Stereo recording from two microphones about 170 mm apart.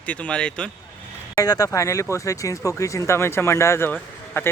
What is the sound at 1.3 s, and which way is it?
Speech, 20° left (ahead or behind).